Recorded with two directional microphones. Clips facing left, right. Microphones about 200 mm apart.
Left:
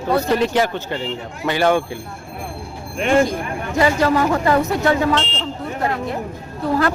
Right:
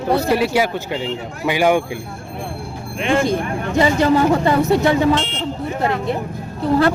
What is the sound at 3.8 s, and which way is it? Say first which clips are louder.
Speech: right 2 dB; 25° right (ahead or behind).